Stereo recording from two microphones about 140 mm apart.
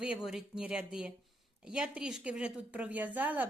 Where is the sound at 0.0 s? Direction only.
5° right (ahead or behind).